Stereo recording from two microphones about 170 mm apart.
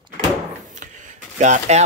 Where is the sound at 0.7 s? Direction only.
45° right (ahead or behind).